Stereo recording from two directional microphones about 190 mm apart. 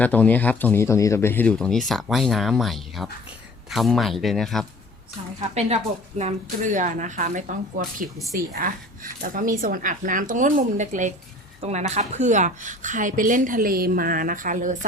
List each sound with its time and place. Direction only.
0.0 s speech: 10° left (ahead or behind)
5.4 s a woman's voice: 35° right (ahead or behind)